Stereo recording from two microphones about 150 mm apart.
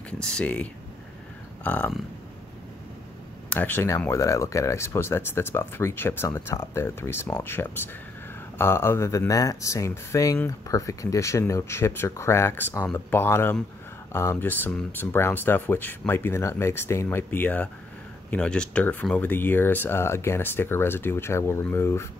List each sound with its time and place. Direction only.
0.2 s speech: 5° left (ahead or behind)
3.4 s speech: 10° left (ahead or behind)